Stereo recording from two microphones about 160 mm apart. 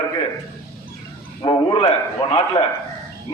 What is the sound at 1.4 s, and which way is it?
Speech, 35° left (ahead or behind).